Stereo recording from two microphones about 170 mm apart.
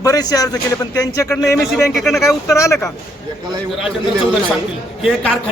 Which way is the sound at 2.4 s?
15° left (ahead or behind).